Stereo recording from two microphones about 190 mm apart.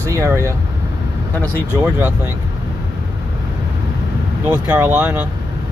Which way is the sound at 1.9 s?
10° right (ahead or behind).